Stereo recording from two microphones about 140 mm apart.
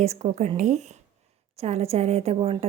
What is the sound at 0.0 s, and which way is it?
A woman's voice, 50° right (ahead or behind).